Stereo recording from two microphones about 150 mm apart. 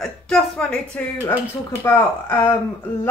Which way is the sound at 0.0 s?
5° left (ahead or behind).